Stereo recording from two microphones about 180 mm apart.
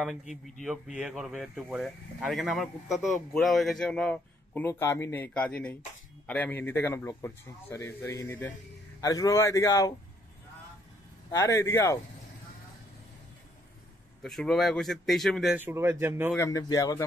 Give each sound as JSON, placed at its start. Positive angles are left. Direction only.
{"t": 0.3, "sound": "a man's voice", "side_deg": 0}
{"t": 11.2, "sound": "a man's voice", "side_deg": 15}
{"t": 14.2, "sound": "speech", "side_deg": 0}
{"t": 15.6, "sound": "speech", "side_deg": -15}
{"t": 16.3, "sound": "speech", "side_deg": 20}